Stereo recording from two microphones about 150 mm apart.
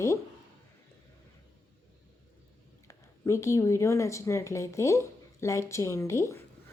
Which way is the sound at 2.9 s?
20° left (ahead or behind).